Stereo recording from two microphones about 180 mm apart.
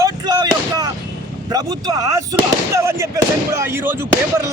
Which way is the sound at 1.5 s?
20° right (ahead or behind).